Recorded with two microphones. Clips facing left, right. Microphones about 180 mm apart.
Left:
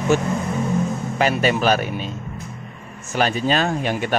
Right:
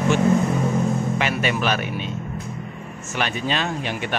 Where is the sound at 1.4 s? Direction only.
40° left (ahead or behind).